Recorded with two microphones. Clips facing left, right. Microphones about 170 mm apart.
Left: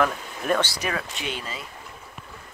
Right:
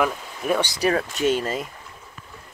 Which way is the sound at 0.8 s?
40° right (ahead or behind).